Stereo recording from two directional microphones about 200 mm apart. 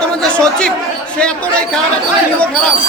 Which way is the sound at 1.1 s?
5° left (ahead or behind).